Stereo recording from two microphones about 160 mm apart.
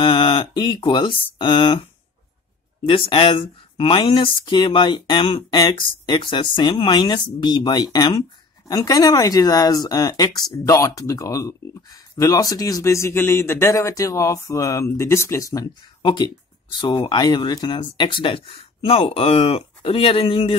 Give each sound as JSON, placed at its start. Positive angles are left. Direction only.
{"t": 0.0, "sound": "speech", "side_deg": 35}